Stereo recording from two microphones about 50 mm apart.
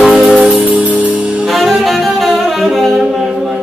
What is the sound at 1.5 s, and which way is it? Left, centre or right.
Saxophone, centre.